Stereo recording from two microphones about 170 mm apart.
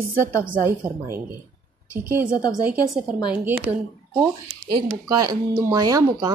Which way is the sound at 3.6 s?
40° right (ahead or behind).